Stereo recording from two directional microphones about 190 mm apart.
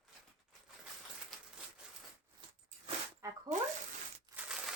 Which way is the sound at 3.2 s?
15° right (ahead or behind).